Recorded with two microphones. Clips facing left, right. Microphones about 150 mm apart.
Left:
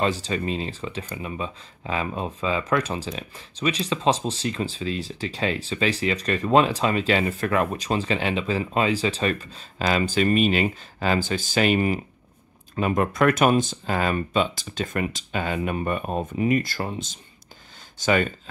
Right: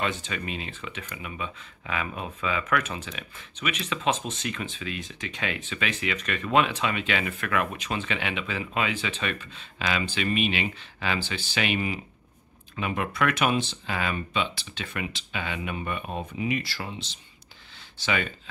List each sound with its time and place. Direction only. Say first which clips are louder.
0.0 s speech: left 6 dB; 35° left (ahead or behind)